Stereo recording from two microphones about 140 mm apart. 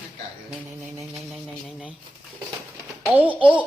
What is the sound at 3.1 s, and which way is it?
Speech, 10° right (ahead or behind).